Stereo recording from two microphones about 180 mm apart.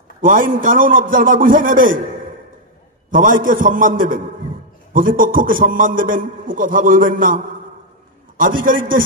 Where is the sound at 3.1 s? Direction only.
50° right (ahead or behind).